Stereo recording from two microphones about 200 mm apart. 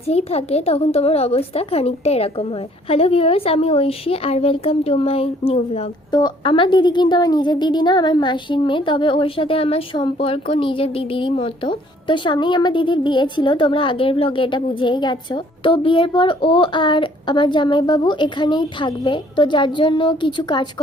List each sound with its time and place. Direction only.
0.1 s a woman's voice: 30° left (ahead or behind)